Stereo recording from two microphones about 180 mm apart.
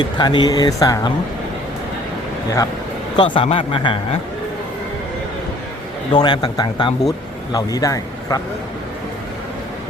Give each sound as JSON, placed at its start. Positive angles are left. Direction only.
{"t": 0.0, "sound": "speech", "side_deg": 25}
{"t": 3.2, "sound": "speech", "side_deg": 30}
{"t": 6.1, "sound": "speech", "side_deg": 25}